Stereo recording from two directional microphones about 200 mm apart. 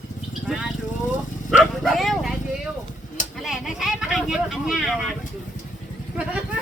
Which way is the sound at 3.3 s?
Centre (ahead or behind).